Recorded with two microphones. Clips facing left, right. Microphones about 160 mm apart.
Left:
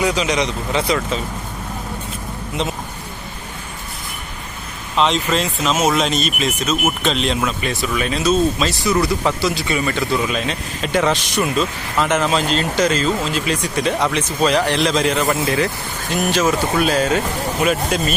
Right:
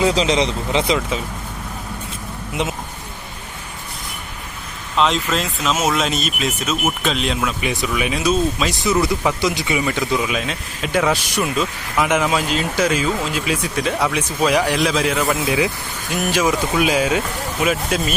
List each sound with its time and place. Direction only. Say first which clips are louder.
0.0 s speech: right 2 dB; 30° right (ahead or behind)
4.9 s speech: left 1 dB; centre (ahead or behind)
7.7 s speech: even; 15° right (ahead or behind)
16.3 s speech: even; 10° right (ahead or behind)